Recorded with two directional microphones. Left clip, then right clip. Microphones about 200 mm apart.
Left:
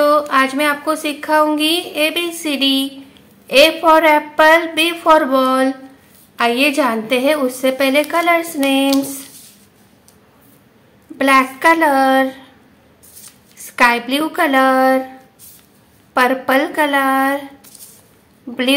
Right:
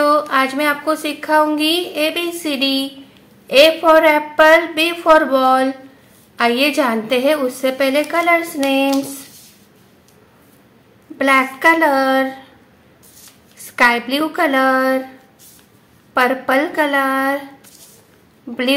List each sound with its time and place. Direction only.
0.3 s a woman's voice: 5° left (ahead or behind)
11.1 s a woman's voice: 5° left (ahead or behind)
13.7 s a woman's voice: 5° left (ahead or behind)
16.1 s a woman's voice: 5° left (ahead or behind)